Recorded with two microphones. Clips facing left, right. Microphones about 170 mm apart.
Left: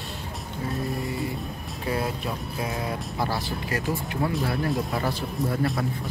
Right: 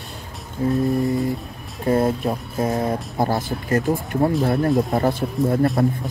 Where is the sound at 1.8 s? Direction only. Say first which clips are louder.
Right 9 dB; 45° right (ahead or behind).